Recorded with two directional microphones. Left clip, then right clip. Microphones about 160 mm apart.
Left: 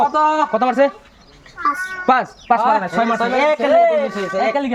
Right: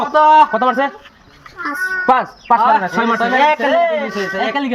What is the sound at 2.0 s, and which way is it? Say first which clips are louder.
Speech: right 1 dB; 25° left (ahead or behind).